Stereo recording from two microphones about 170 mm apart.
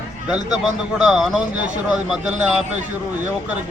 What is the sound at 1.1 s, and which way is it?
Speech, 5° right (ahead or behind).